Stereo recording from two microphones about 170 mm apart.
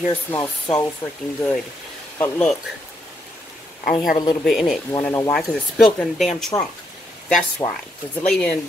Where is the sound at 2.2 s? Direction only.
10° left (ahead or behind).